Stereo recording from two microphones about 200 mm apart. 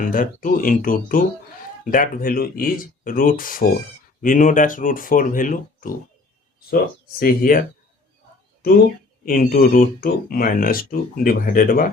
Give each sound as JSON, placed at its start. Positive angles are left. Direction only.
{"t": 0.0, "sound": "speech", "side_deg": 45}
{"t": 8.6, "sound": "speech", "side_deg": 50}